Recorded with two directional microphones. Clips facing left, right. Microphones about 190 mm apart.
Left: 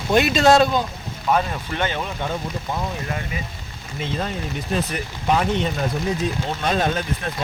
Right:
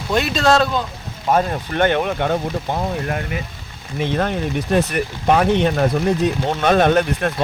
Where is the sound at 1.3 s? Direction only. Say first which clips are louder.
Right 3 dB; 40° right (ahead or behind).